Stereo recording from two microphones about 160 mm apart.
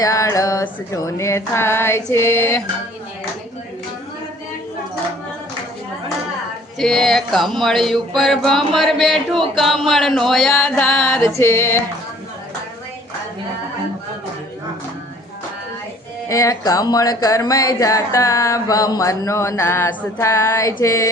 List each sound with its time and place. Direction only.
0.0 s music: 20° left (ahead or behind)
6.7 s speech: centre (ahead or behind)
10.6 s music: 5° left (ahead or behind)
16.3 s speech: 20° left (ahead or behind)